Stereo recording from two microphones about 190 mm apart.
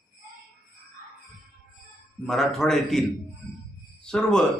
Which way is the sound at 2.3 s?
Centre (ahead or behind).